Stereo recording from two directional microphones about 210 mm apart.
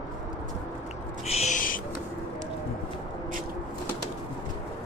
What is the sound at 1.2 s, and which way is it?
Owl, 30° left (ahead or behind).